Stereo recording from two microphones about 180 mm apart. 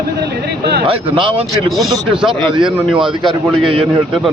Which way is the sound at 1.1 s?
30° right (ahead or behind).